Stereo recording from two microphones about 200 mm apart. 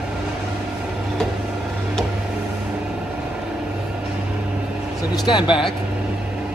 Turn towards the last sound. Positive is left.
turn(degrees=25)  # may be behind; listen again after turning